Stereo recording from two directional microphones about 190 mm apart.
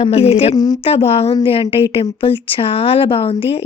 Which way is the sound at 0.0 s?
30° left (ahead or behind).